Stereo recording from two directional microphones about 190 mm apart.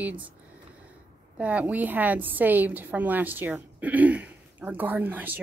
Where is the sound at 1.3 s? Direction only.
5° right (ahead or behind).